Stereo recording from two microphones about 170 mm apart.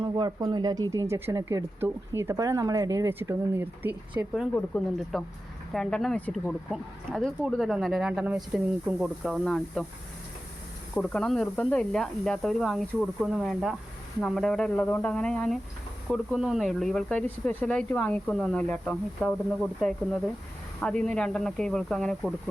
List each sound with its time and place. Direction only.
0.0 s speech: 25° right (ahead or behind)
4.5 s speech: 5° left (ahead or behind)
10.9 s speech: 5° left (ahead or behind)